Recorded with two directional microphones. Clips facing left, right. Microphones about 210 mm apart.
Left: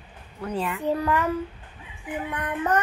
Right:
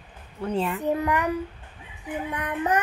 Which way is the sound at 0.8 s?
20° right (ahead or behind).